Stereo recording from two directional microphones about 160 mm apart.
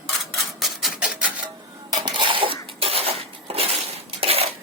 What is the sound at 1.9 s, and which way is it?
Dishes, 30° right (ahead or behind).